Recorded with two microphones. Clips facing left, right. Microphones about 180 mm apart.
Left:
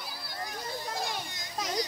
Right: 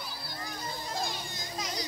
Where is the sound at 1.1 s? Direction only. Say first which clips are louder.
Left 1 dB; 70° left (ahead or behind).